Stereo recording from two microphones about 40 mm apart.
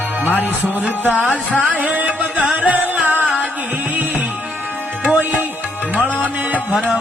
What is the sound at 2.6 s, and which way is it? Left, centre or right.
Music, right.